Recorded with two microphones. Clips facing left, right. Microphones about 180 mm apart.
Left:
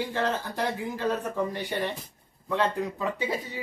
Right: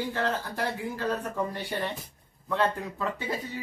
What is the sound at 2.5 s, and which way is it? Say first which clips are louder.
Speech: left 1 dB; 15° left (ahead or behind).